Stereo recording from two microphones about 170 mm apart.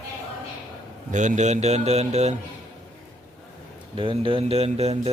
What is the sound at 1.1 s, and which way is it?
Speech, 45° right (ahead or behind).